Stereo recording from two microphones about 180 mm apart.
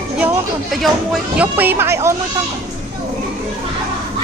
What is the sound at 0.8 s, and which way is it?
Speech, 5° right (ahead or behind).